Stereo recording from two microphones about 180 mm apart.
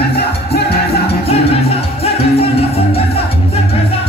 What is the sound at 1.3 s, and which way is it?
Music, 35° left (ahead or behind).